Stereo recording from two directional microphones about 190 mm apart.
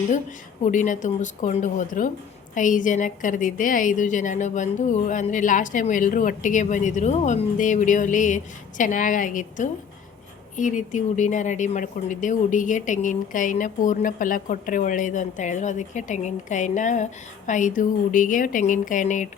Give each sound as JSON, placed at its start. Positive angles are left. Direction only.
{"t": 0.6, "sound": "a woman's voice", "side_deg": 40}